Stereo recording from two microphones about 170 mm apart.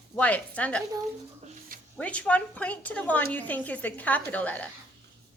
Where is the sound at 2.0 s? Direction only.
5° left (ahead or behind).